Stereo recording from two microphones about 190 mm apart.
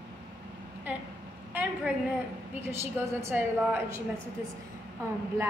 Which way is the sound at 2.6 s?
10° right (ahead or behind).